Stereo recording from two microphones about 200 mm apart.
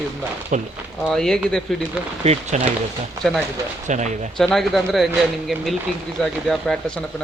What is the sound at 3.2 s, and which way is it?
Speech, centre (ahead or behind).